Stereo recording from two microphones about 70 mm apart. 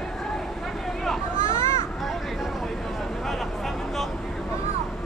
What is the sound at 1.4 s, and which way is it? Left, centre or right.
Children playing, left.